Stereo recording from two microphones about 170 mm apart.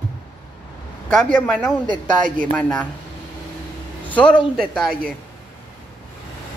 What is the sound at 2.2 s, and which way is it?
Speech, 50° right (ahead or behind).